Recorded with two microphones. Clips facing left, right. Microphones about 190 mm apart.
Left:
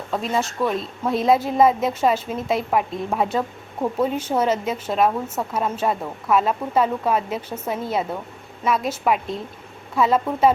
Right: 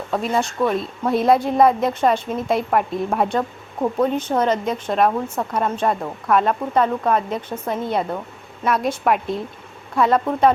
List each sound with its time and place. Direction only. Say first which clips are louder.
0.1 s a woman's voice: right 2 dB; centre (ahead or behind)